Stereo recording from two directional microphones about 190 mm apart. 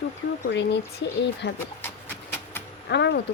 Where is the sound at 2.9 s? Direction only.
65° left (ahead or behind).